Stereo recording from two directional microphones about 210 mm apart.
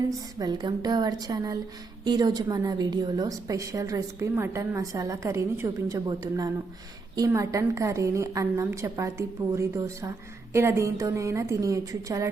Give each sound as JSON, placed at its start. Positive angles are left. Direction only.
{"t": 0.3, "sound": "a woman's voice", "side_deg": -20}